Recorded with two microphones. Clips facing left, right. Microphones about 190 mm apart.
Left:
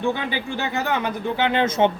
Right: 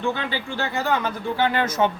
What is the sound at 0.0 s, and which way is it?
Speech, 15° left (ahead or behind).